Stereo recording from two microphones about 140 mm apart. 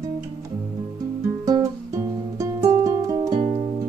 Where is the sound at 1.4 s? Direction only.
25° right (ahead or behind).